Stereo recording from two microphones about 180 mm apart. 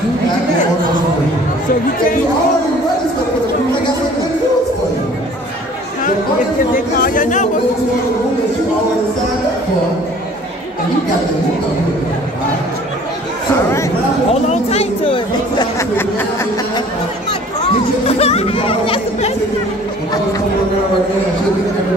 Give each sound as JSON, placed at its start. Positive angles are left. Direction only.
{"t": 7.0, "sound": "speech", "side_deg": 45}
{"t": 14.3, "sound": "chatter", "side_deg": 35}
{"t": 15.8, "sound": "a sound", "side_deg": 10}
{"t": 18.0, "sound": "speech", "side_deg": 35}